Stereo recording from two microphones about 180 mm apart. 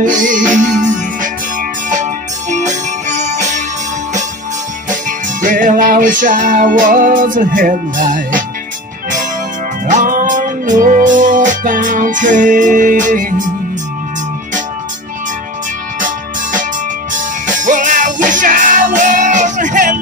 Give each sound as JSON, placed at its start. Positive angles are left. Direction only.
{"t": 0.0, "sound": "music", "side_deg": -45}
{"t": 2.5, "sound": "music", "side_deg": -40}
{"t": 5.4, "sound": "music", "side_deg": -45}
{"t": 9.8, "sound": "music", "side_deg": -45}
{"t": 17.1, "sound": "music", "side_deg": -45}